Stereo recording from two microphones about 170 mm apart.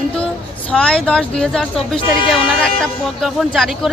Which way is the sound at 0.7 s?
5° left (ahead or behind).